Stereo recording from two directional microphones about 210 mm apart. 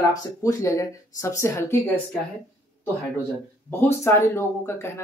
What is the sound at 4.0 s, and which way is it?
Speech, 10° left (ahead or behind).